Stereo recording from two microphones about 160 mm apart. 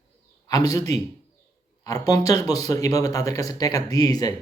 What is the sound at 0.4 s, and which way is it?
A man's voice, 20° left (ahead or behind).